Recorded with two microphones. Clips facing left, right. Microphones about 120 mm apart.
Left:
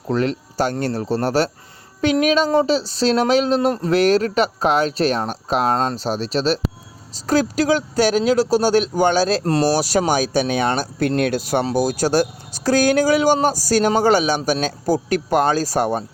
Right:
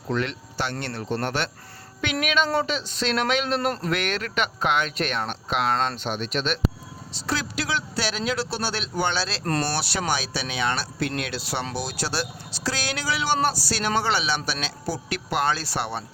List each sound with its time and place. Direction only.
0.1 s speech: 40° left (ahead or behind)
9.4 s speech: 30° left (ahead or behind)
9.7 s speech: 40° left (ahead or behind)